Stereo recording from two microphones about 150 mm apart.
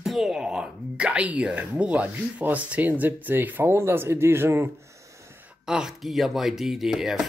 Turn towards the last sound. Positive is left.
turn(degrees=-5)  # may be behind; listen again after turning